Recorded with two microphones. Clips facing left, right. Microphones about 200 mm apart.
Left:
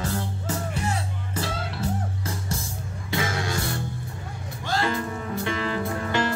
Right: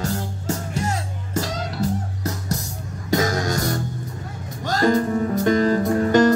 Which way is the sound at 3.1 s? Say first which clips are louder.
Right 7 dB; 40° right (ahead or behind).